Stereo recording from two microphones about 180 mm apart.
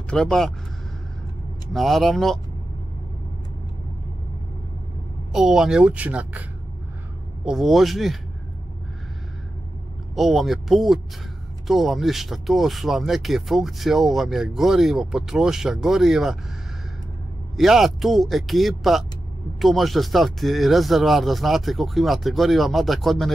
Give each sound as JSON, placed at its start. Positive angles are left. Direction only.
{"t": 0.1, "sound": "speech", "side_deg": 5}
{"t": 1.7, "sound": "speech", "side_deg": 0}
{"t": 5.3, "sound": "speech", "side_deg": -5}
{"t": 7.4, "sound": "speech", "side_deg": 0}
{"t": 10.1, "sound": "speech", "side_deg": 0}
{"t": 17.6, "sound": "speech", "side_deg": 0}